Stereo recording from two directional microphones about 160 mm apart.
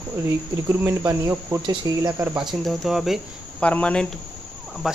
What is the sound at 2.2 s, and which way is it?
Speech, 10° right (ahead or behind).